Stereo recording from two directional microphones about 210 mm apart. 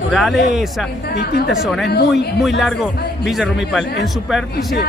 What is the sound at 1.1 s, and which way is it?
Speech, 50° left (ahead or behind).